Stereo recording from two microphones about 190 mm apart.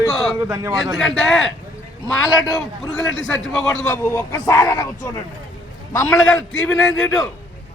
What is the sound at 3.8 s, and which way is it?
Speech, 10° left (ahead or behind).